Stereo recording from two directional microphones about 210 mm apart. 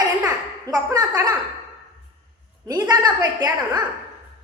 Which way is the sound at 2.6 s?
20° right (ahead or behind).